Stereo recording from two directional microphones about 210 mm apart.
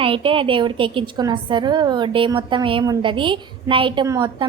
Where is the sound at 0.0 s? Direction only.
25° right (ahead or behind).